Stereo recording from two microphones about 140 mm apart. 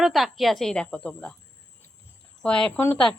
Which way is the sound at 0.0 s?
Centre (ahead or behind).